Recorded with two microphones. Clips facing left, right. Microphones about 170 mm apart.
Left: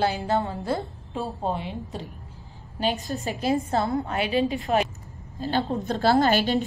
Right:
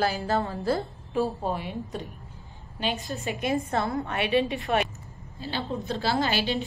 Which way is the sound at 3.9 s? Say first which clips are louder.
Left 3 dB; 25° left (ahead or behind).